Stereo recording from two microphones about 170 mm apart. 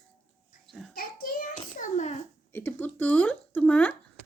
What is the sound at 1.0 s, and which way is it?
Child singing, 60° left (ahead or behind).